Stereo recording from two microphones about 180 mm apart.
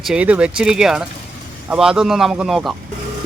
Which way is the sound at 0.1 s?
5° right (ahead or behind).